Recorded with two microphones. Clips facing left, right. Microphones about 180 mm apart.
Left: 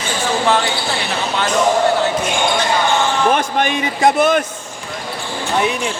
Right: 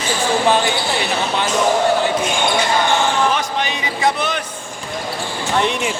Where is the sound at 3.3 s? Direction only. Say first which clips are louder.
Left 4 dB; 55° left (ahead or behind).